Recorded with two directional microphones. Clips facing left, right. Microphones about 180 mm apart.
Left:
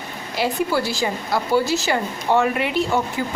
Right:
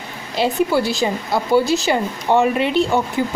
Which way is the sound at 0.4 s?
20° right (ahead or behind).